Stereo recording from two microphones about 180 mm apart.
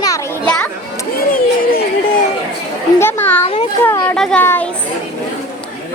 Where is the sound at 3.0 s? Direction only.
10° left (ahead or behind).